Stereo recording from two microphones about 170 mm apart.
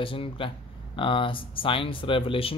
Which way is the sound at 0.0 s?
30° left (ahead or behind).